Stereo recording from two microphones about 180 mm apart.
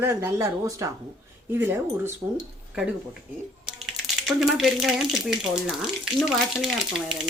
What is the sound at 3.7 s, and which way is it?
Speech, centre (ahead or behind).